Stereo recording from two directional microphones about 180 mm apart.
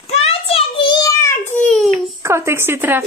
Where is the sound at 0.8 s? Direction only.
25° left (ahead or behind).